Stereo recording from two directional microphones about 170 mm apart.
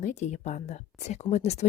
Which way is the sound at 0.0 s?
45° left (ahead or behind).